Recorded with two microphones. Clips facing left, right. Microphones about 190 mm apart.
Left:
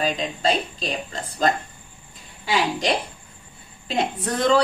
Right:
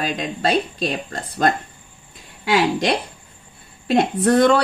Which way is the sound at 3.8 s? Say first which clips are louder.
Right 8 dB; 65° right (ahead or behind).